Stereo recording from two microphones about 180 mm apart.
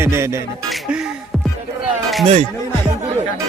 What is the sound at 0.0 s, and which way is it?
Music, 15° right (ahead or behind).